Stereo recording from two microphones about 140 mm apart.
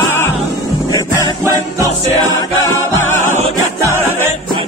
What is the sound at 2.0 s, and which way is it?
Music, 25° left (ahead or behind).